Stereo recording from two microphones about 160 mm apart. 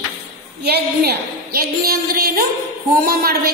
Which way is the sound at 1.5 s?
70° right (ahead or behind).